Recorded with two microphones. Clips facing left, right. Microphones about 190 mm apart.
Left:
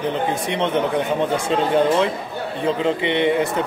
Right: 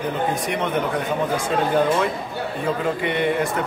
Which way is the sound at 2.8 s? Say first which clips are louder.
Left 4 dB; 25° left (ahead or behind).